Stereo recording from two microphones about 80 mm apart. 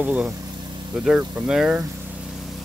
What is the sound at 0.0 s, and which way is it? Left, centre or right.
Speech, centre.